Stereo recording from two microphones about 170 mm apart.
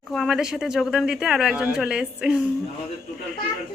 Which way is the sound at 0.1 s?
Centre (ahead or behind).